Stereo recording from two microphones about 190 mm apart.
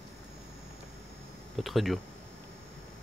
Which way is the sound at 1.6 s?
Centre (ahead or behind).